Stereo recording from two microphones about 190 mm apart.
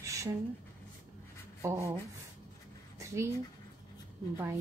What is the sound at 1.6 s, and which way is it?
Speech, 15° right (ahead or behind).